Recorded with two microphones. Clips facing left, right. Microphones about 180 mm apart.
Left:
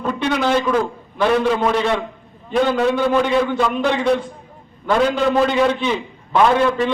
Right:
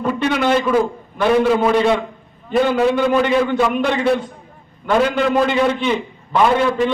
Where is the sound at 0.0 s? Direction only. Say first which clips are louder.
Right 2 dB; 5° right (ahead or behind).